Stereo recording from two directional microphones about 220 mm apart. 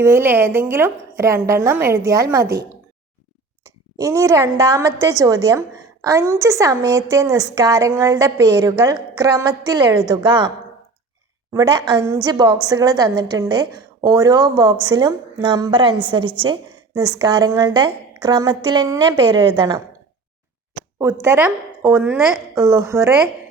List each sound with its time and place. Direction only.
0.0 s a woman's voice: 10° right (ahead or behind)
3.9 s a woman's voice: 15° right (ahead or behind)
11.5 s a woman's voice: 15° right (ahead or behind)
21.0 s a woman's voice: 10° right (ahead or behind)